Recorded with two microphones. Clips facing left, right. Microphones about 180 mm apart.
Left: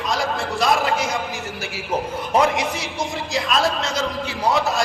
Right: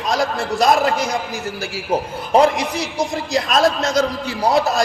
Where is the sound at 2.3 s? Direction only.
35° right (ahead or behind).